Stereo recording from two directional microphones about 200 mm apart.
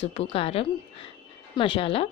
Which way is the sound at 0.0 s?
30° left (ahead or behind).